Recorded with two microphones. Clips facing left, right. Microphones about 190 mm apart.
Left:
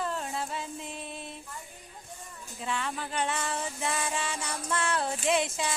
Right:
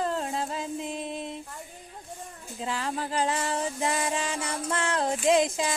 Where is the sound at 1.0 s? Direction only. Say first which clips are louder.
Right 7 dB; 90° right.